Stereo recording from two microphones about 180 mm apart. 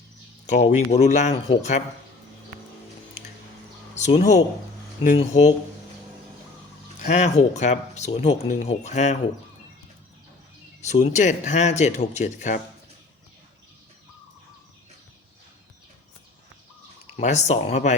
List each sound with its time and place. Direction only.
0.4 s speech: 40° left (ahead or behind)
3.9 s speech: 40° left (ahead or behind)
7.1 s speech: 40° left (ahead or behind)
10.8 s speech: 40° left (ahead or behind)
17.2 s speech: 40° left (ahead or behind)